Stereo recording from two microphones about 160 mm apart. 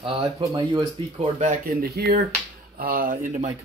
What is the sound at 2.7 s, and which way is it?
Speech, 60° right (ahead or behind).